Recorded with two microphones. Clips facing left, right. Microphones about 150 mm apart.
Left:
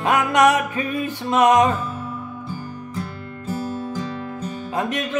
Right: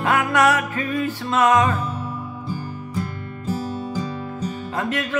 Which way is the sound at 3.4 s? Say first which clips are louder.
Even; 10° right (ahead or behind).